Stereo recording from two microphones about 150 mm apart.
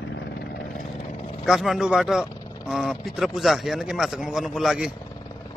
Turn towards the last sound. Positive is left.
turn(degrees=0)  # may be behind; listen again after turning